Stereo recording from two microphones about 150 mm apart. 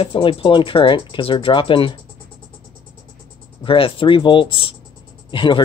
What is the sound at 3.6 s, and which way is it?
Speech, 35° left (ahead or behind).